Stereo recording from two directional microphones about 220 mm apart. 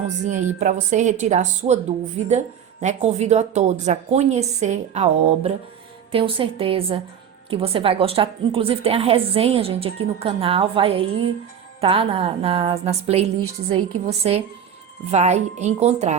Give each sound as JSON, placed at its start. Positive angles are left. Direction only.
{"t": 0.6, "sound": "a woman's voice", "side_deg": -35}